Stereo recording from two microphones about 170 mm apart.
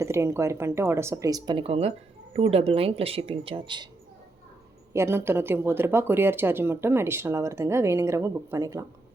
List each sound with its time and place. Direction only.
0.0 s speech: 15° right (ahead or behind)
4.9 s speech: 15° right (ahead or behind)